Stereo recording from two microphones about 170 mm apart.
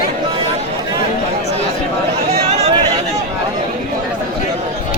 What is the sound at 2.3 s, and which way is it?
Chatter, 40° right (ahead or behind).